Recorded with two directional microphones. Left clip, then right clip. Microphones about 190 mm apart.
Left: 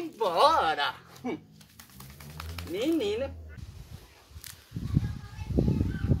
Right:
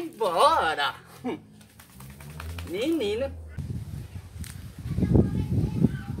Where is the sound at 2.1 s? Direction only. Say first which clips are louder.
Right 1 dB; 35° left (ahead or behind).